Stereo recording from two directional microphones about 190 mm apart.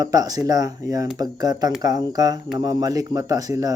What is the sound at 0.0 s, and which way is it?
Speech, 20° right (ahead or behind).